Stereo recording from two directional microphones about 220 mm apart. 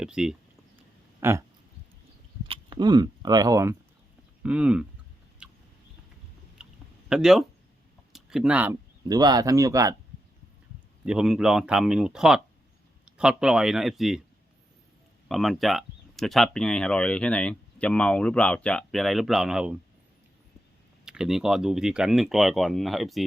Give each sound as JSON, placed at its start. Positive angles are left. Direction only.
{"t": 0.0, "sound": "speech", "side_deg": -5}
{"t": 2.5, "sound": "speech", "side_deg": -20}
{"t": 5.4, "sound": "a sound", "side_deg": -5}
{"t": 6.6, "sound": "a sound", "side_deg": -5}
{"t": 7.1, "sound": "speech", "side_deg": 0}
{"t": 8.1, "sound": "a sound", "side_deg": 0}
{"t": 9.0, "sound": "speech", "side_deg": -15}
{"t": 11.0, "sound": "speech", "side_deg": -5}
{"t": 15.3, "sound": "speech", "side_deg": 0}
{"t": 21.0, "sound": "speech", "side_deg": -5}